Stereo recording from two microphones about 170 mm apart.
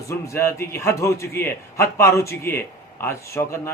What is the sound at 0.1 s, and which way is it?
A man's voice, 15° left (ahead or behind).